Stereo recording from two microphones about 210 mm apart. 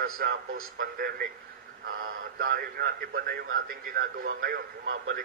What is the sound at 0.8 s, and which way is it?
Speech, 45° right (ahead or behind).